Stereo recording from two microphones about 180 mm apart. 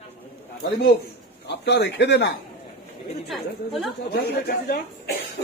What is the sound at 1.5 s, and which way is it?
Speech, 70° left (ahead or behind).